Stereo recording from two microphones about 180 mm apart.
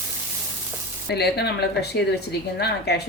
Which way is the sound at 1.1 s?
65° left (ahead or behind).